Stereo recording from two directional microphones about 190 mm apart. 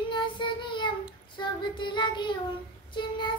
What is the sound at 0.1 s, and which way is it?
Child singing, 25° left (ahead or behind).